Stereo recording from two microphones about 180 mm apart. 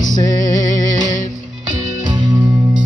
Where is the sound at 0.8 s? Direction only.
45° left (ahead or behind).